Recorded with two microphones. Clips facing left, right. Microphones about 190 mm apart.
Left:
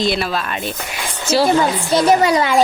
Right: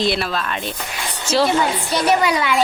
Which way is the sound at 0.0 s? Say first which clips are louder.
Left 1 dB; centre (ahead or behind).